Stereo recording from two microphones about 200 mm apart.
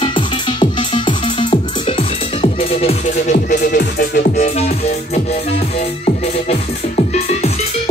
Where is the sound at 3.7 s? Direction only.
55° left (ahead or behind).